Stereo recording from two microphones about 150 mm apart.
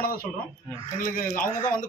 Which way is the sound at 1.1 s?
65° left (ahead or behind).